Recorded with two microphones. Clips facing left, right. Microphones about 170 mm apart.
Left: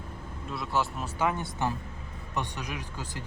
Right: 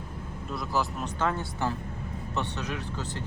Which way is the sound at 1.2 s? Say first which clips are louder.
Left 1 dB; 20° left (ahead or behind).